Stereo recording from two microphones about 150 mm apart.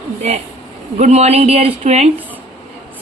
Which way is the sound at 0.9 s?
45° right (ahead or behind).